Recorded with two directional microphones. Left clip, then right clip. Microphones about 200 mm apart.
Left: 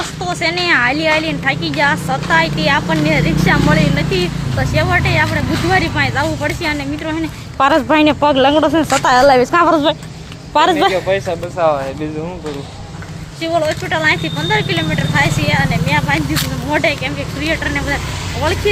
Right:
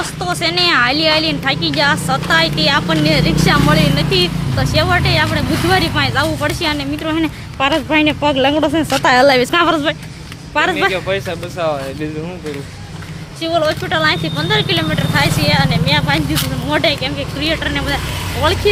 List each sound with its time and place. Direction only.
0.3 s speech: 10° right (ahead or behind)
7.6 s speech: 20° left (ahead or behind); by 9.0 s centre (ahead or behind)
9.0 s speech: 10° right (ahead or behind)
9.4 s a woman's voice: 25° right (ahead or behind)
10.5 s speech: 20° left (ahead or behind)
11.1 s speech: 15° right (ahead or behind)
13.4 s speech: 10° right (ahead or behind)